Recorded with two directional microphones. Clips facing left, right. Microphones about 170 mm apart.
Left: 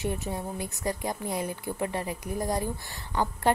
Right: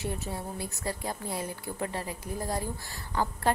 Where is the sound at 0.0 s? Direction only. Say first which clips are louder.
Left 3 dB; 20° left (ahead or behind).